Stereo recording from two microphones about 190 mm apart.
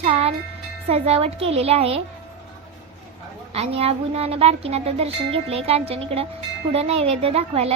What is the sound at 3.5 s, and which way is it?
A child's voice, 35° right (ahead or behind).